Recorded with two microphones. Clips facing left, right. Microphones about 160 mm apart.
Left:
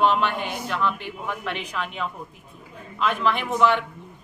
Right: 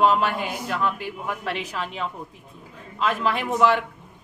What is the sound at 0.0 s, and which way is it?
Speech, 40° right (ahead or behind).